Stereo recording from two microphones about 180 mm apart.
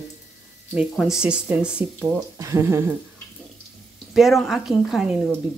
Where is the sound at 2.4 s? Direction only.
15° right (ahead or behind).